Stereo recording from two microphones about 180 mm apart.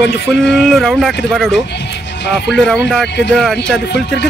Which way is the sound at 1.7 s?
75° left (ahead or behind).